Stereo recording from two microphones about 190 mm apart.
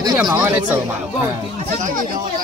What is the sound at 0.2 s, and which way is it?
Speech, 10° right (ahead or behind).